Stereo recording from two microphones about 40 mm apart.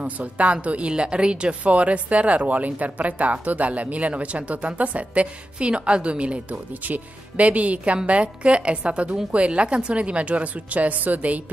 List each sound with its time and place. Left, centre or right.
0.0 s a woman's voice: right